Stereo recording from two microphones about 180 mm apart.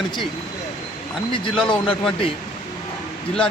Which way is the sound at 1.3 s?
30° left (ahead or behind).